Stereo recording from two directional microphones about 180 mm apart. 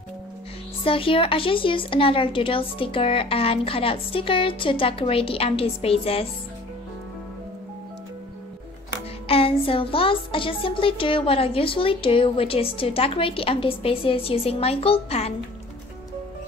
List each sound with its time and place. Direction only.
0.8 s speech: 30° left (ahead or behind)
9.3 s speech: 30° left (ahead or behind)